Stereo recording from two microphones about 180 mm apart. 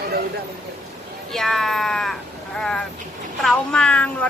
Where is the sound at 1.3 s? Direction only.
Centre (ahead or behind).